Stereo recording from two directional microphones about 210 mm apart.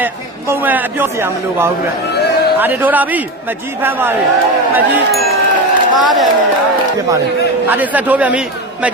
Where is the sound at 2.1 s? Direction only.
50° left (ahead or behind).